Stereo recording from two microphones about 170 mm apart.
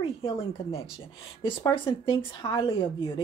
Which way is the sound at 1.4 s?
30° left (ahead or behind).